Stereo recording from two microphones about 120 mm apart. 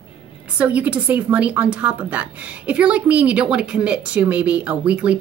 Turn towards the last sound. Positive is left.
turn(degrees=-10)  # may be behind; listen again after turning